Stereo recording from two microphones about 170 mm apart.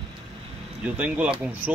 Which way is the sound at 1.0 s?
10° right (ahead or behind).